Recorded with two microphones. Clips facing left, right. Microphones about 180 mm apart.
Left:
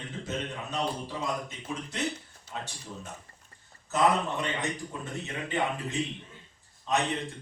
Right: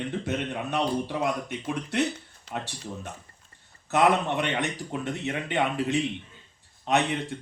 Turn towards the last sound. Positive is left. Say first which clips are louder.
# right 4 dB
turn(degrees=-65)  # may be behind; listen again after turning